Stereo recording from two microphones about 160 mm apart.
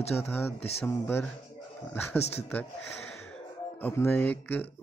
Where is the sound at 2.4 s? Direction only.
5° left (ahead or behind).